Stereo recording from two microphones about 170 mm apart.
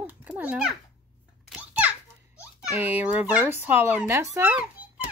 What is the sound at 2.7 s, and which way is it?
Speech, 10° right (ahead or behind).